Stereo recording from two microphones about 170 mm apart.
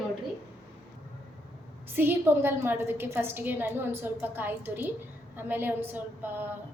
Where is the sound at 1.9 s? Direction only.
10° right (ahead or behind).